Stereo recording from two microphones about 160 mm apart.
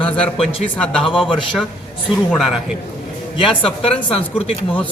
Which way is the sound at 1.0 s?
35° left (ahead or behind).